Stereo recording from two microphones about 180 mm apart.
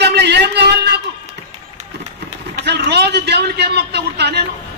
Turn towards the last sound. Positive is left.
turn(degrees=-65)  # may be behind; listen again after turning